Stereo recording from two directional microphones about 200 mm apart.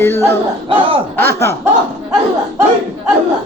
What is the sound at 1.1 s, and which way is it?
Music, 10° left (ahead or behind).